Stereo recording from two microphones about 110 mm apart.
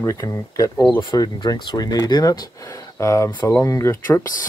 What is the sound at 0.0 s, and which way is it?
Speech, 25° left (ahead or behind).